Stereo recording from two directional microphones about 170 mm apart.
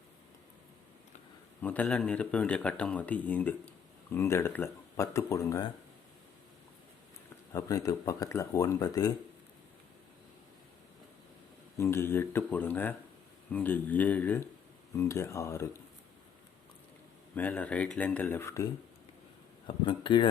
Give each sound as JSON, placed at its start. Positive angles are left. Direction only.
{"t": 1.6, "sound": "speech", "side_deg": 10}
{"t": 7.5, "sound": "speech", "side_deg": 20}
{"t": 11.8, "sound": "speech", "side_deg": 15}
{"t": 17.3, "sound": "speech", "side_deg": 10}
{"t": 19.6, "sound": "speech", "side_deg": 30}